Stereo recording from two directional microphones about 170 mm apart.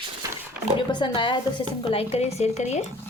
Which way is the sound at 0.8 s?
25° left (ahead or behind).